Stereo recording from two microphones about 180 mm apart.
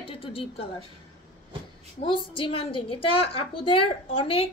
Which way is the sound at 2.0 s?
30° left (ahead or behind).